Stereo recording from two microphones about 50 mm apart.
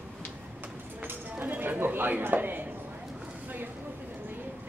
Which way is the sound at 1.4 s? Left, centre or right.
Right.